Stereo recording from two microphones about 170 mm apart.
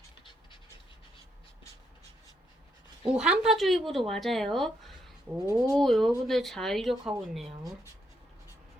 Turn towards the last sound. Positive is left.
turn(degrees=0)  # may be behind; listen again after turning